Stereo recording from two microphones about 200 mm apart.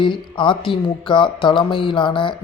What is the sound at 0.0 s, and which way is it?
Speech, 25° left (ahead or behind).